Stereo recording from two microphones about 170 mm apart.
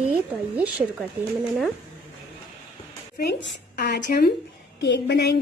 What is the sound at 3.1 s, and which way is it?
Speech, 85° left.